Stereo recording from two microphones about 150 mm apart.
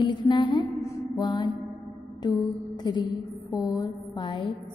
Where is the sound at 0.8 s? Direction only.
30° left (ahead or behind).